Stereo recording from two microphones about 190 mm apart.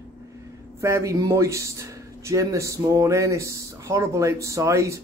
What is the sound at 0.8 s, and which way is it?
Speech, 15° right (ahead or behind).